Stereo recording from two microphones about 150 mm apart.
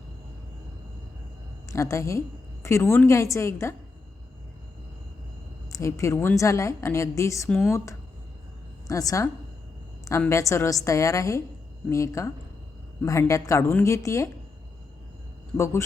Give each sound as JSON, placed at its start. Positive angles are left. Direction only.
{"t": 1.6, "sound": "a woman's voice", "side_deg": 20}
{"t": 5.7, "sound": "a woman's voice", "side_deg": 20}
{"t": 8.9, "sound": "a woman's voice", "side_deg": 20}
{"t": 15.5, "sound": "speech", "side_deg": 15}